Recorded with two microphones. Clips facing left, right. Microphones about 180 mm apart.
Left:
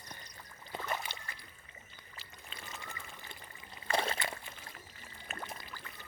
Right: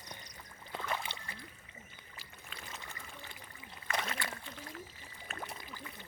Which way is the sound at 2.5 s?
20° left (ahead or behind).